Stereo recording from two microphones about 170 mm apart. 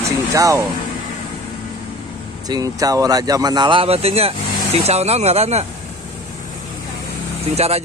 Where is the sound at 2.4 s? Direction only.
20° right (ahead or behind); by 5.6 s 40° right (ahead or behind).